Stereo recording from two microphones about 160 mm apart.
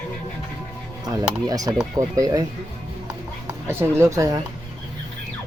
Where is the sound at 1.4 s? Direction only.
25° right (ahead or behind).